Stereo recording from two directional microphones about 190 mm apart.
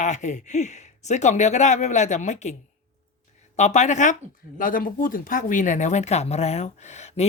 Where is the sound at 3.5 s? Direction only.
40° left (ahead or behind).